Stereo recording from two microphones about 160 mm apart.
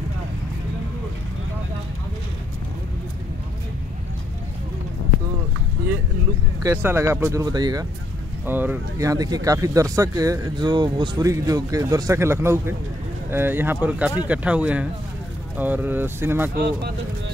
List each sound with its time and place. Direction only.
6.6 s speech: 15° right (ahead or behind)
8.5 s speech: 10° right (ahead or behind)
16.5 s speech: 80° right